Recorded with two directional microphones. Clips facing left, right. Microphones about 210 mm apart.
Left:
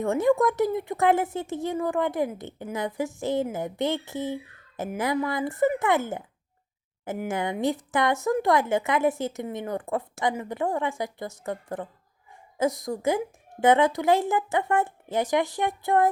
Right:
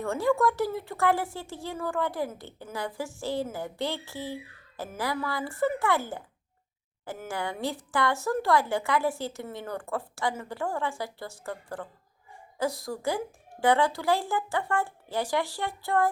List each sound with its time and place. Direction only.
0.0 s speech: 20° left (ahead or behind)